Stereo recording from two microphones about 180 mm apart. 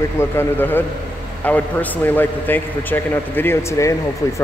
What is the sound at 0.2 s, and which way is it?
A man's voice, 15° left (ahead or behind).